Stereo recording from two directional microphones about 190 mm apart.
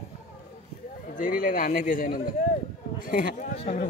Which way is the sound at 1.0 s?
45° left (ahead or behind).